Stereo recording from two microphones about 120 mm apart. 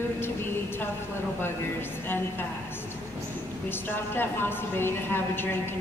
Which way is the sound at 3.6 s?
15° left (ahead or behind).